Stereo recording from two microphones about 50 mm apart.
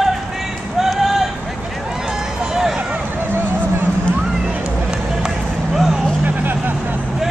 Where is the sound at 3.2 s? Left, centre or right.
Right.